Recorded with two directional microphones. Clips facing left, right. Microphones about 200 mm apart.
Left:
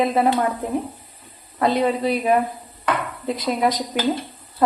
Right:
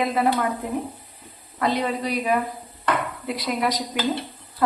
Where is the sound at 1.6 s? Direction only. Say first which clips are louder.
Left 4 dB; 30° left (ahead or behind).